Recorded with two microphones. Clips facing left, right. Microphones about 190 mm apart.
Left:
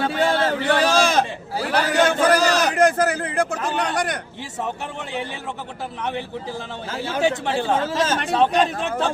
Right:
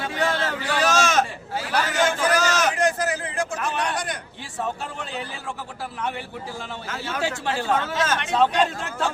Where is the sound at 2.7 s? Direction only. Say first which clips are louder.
Left 5 dB; 65° left (ahead or behind).